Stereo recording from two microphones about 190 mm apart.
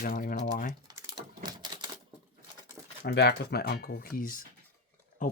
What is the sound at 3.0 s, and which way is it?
Speech, 55° left (ahead or behind).